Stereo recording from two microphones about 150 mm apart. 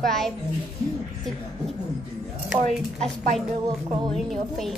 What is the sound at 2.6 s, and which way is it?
Speech, 50° right (ahead or behind).